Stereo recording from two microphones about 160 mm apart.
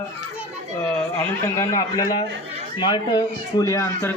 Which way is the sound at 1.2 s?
15° left (ahead or behind).